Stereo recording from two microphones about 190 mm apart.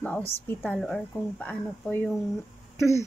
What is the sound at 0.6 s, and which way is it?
Speech, centre (ahead or behind).